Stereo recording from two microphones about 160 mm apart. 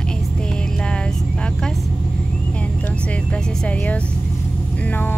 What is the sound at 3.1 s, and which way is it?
Speech, 5° left (ahead or behind).